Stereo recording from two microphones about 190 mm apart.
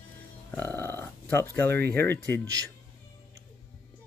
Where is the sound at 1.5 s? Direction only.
10° left (ahead or behind).